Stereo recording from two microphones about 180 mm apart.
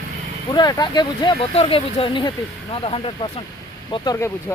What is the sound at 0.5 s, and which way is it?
Speech, 20° left (ahead or behind).